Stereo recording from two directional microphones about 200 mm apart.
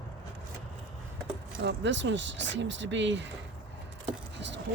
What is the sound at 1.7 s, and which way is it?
Speech, 65° right (ahead or behind).